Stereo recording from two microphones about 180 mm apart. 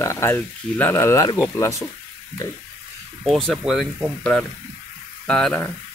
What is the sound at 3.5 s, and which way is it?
Speech, centre (ahead or behind).